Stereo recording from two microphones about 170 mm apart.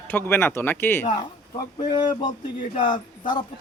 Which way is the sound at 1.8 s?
25° left (ahead or behind).